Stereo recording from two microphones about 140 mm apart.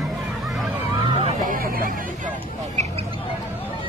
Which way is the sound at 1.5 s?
90° right.